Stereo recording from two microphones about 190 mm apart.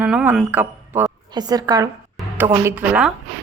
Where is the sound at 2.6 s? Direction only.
10° right (ahead or behind).